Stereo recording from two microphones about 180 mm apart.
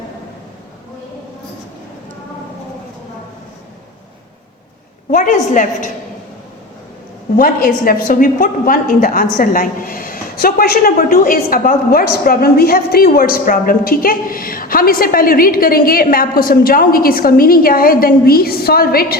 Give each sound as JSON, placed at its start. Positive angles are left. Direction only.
{"t": 5.1, "sound": "a woman's voice", "side_deg": 45}
{"t": 7.3, "sound": "a woman's voice", "side_deg": 50}